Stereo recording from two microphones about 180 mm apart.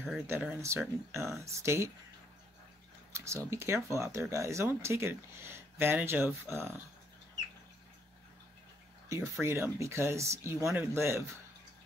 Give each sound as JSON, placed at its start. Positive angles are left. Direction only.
{"t": 0.3, "sound": "speech", "side_deg": -10}
{"t": 3.1, "sound": "speech", "side_deg": -15}
{"t": 9.1, "sound": "speech", "side_deg": -15}